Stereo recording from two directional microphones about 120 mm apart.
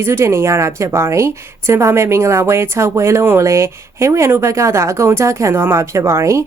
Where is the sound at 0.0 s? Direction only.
20° right (ahead or behind).